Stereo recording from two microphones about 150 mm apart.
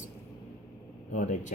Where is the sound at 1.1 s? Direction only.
55° left (ahead or behind).